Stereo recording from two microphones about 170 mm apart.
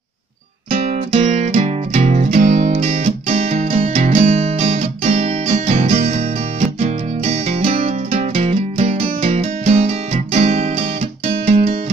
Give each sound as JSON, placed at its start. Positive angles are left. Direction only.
{"t": 0.7, "sound": "music", "side_deg": -35}